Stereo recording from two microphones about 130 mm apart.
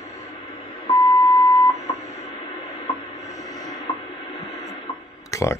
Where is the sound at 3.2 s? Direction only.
25° left (ahead or behind).